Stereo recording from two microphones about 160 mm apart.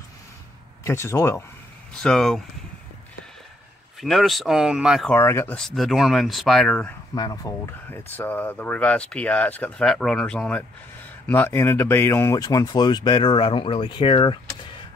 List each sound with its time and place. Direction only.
0.8 s speech: 15° left (ahead or behind)
2.0 s speech: 5° left (ahead or behind)
4.0 s speech: centre (ahead or behind)
5.1 s speech: 15° left (ahead or behind)
5.6 s speech: centre (ahead or behind)
7.2 s speech: 25° left (ahead or behind)